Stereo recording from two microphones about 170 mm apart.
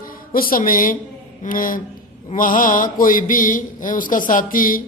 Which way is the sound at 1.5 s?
55° left (ahead or behind).